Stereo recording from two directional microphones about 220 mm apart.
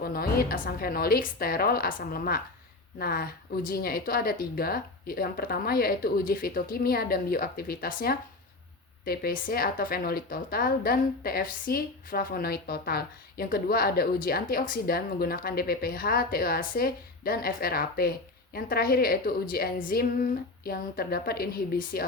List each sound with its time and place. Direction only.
0.0 s a woman's voice: 45° left (ahead or behind)